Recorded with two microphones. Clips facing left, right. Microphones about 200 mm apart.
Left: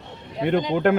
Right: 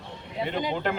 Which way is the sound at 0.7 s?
55° left (ahead or behind).